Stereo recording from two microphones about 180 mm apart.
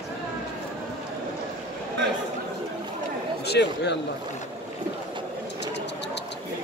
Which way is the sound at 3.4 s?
70° left (ahead or behind).